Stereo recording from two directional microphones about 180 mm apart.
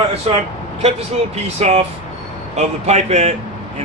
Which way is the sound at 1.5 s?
35° right (ahead or behind).